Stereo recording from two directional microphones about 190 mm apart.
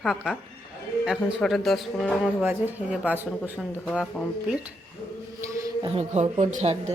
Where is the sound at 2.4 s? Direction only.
10° right (ahead or behind).